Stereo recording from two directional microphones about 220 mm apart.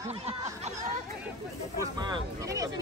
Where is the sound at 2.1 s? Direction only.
15° right (ahead or behind).